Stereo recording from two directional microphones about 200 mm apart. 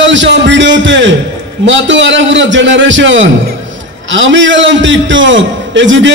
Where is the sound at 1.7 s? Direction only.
65° right (ahead or behind).